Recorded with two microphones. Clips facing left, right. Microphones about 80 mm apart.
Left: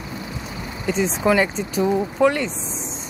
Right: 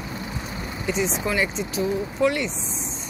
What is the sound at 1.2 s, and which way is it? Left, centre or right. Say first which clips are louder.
Speech: left 11 dB; left.